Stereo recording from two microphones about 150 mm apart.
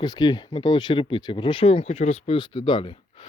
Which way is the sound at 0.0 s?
25° left (ahead or behind).